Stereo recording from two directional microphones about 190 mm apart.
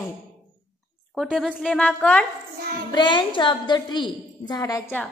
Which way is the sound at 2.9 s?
25° left (ahead or behind).